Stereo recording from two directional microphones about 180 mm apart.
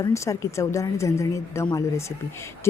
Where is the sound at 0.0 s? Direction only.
15° left (ahead or behind).